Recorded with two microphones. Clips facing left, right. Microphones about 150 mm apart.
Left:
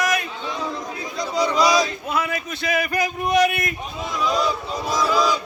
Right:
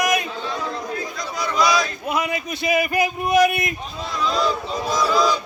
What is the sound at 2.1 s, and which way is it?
Speech, 15° right (ahead or behind).